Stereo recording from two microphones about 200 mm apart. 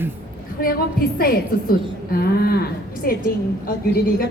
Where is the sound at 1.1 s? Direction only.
50° left (ahead or behind).